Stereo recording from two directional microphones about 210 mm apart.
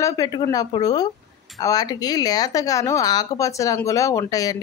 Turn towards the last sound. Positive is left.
turn(degrees=15)  # may be behind; listen again after turning